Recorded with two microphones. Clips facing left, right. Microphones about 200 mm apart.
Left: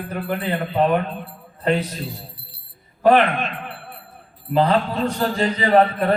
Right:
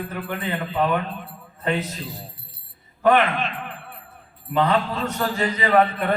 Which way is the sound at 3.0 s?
35° left (ahead or behind).